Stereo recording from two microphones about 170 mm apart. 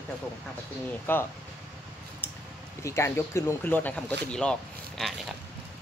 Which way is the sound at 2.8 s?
15° left (ahead or behind).